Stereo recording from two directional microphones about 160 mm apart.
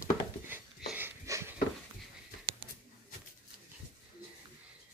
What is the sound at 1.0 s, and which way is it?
Wheeze, 15° right (ahead or behind).